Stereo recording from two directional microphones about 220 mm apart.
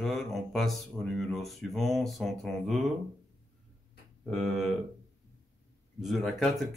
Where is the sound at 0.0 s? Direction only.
Centre (ahead or behind).